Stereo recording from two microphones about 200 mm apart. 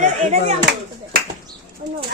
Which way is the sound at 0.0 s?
35° right (ahead or behind).